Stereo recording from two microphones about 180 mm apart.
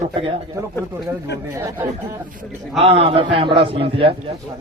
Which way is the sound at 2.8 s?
30° right (ahead or behind).